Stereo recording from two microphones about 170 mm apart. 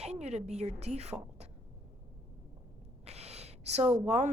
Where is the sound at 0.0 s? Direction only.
40° right (ahead or behind).